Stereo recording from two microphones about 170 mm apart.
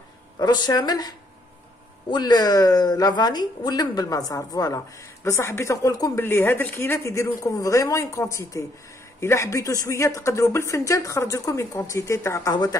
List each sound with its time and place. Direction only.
0.4 s a woman's voice: 25° left (ahead or behind)